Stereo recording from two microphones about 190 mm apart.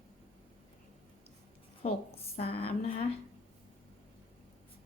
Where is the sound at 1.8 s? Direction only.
30° left (ahead or behind).